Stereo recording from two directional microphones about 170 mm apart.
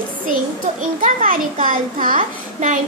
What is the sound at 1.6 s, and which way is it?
Speech, 50° right (ahead or behind).